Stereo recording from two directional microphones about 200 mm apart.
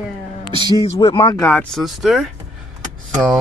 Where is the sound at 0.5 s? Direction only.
20° right (ahead or behind).